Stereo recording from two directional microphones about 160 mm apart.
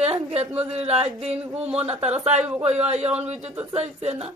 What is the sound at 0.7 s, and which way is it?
A woman's voice, 40° right (ahead or behind).